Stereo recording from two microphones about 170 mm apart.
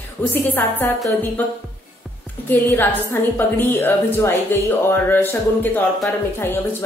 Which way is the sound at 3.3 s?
10° left (ahead or behind).